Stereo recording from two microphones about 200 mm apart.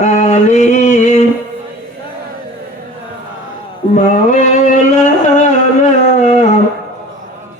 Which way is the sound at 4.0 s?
35° left (ahead or behind).